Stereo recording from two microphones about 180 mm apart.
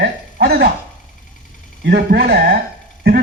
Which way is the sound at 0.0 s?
65° right (ahead or behind).